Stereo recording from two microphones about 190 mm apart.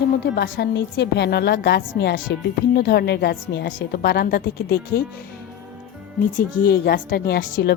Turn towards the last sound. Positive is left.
turn(degrees=50)  # may be behind; listen again after turning